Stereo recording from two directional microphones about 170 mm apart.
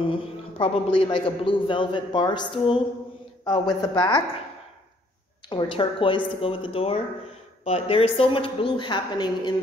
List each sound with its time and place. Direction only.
0.0 s a man's voice: 30° left (ahead or behind)
5.5 s a man's voice: 30° left (ahead or behind)